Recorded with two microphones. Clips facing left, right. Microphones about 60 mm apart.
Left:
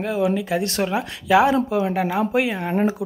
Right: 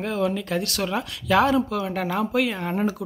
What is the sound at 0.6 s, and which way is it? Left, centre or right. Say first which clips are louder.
Speech: left 4 dB; left.